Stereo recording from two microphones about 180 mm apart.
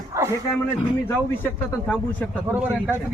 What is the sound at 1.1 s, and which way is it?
A man's voice, 10° left (ahead or behind).